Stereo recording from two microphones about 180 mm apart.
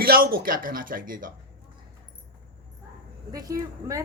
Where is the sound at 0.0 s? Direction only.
55° right (ahead or behind).